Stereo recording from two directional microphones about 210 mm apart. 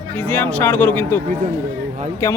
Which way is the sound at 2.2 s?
10° left (ahead or behind).